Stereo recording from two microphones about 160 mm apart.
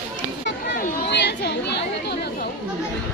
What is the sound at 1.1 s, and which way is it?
Chatter, 90° left.